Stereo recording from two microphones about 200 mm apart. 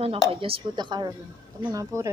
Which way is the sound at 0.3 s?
25° right (ahead or behind).